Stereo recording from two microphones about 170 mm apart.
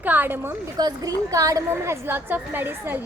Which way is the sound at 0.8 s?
20° right (ahead or behind).